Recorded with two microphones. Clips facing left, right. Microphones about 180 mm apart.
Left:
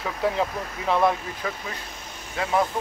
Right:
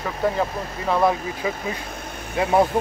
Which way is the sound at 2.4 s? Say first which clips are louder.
Right 5 dB; 25° right (ahead or behind).